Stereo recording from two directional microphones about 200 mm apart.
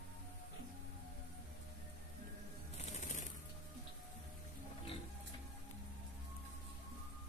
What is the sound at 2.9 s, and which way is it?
Music, 35° left (ahead or behind).